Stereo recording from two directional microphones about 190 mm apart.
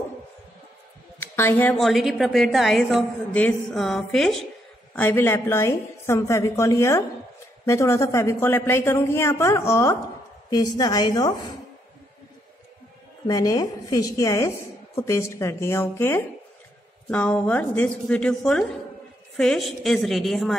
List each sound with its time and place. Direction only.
1.2 s a woman's voice: 15° left (ahead or behind)
13.3 s a woman's voice: 20° left (ahead or behind); by 20.5 s centre (ahead or behind)